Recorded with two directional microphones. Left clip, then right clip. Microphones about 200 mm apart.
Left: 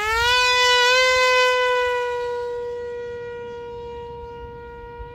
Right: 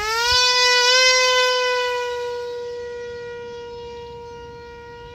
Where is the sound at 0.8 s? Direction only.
20° right (ahead or behind).